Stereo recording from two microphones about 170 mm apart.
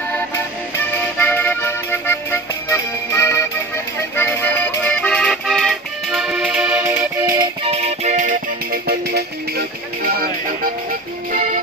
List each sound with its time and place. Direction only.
1.1 s music: 10° left (ahead or behind); by 7.4 s 20° right (ahead or behind)
7.6 s music: 35° right (ahead or behind)
8.8 s music: 65° right (ahead or behind)